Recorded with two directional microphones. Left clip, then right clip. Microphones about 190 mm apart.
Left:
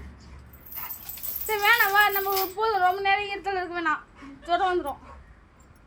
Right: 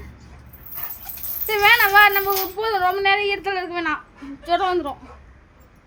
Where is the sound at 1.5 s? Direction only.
15° right (ahead or behind).